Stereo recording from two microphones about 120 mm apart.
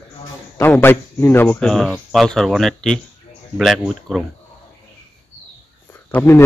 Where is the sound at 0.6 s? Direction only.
20° left (ahead or behind).